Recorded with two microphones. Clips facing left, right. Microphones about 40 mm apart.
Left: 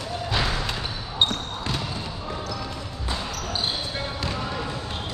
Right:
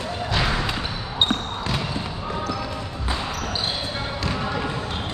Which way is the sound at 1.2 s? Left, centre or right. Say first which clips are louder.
Right 2 dB; right.